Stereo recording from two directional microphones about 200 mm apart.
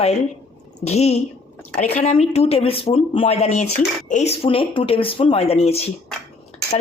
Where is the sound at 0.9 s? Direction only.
30° left (ahead or behind).